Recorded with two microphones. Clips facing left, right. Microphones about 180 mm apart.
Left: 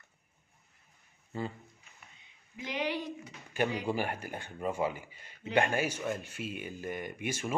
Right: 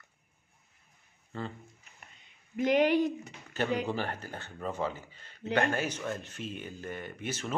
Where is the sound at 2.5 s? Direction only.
50° right (ahead or behind).